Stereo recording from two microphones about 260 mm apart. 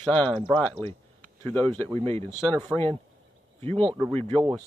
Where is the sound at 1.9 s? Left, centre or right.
Right.